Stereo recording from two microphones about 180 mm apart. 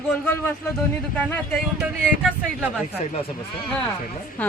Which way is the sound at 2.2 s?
5° right (ahead or behind).